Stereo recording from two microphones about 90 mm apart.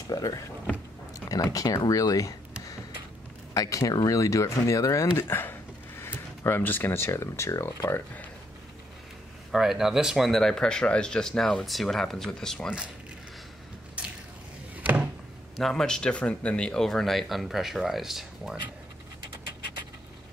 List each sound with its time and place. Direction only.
0.1 s speech: 40° left (ahead or behind)
3.5 s speech: 40° left (ahead or behind)
5.1 s speech: 25° left (ahead or behind)
9.5 s speech: 5° right (ahead or behind)
14.8 s a sound: 15° right (ahead or behind)
15.5 s speech: 5° left (ahead or behind)